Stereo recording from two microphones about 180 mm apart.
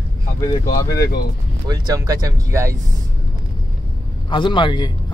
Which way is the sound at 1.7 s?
20° right (ahead or behind).